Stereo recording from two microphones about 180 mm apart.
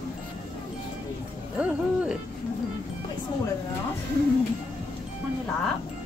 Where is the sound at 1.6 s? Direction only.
5° right (ahead or behind).